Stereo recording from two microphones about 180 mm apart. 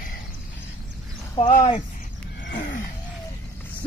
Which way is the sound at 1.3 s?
30° left (ahead or behind).